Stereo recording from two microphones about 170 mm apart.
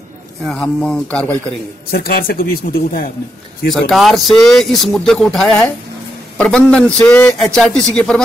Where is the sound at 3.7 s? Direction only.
Centre (ahead or behind).